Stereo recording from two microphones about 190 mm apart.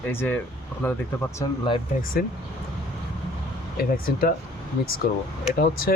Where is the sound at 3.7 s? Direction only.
50° left (ahead or behind).